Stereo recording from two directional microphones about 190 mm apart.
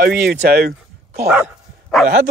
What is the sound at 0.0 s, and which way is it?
Speech, 55° right (ahead or behind).